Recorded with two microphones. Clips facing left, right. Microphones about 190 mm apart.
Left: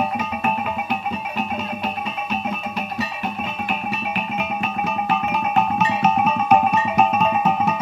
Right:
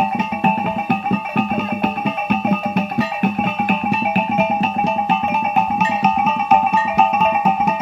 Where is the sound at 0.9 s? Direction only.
55° right (ahead or behind).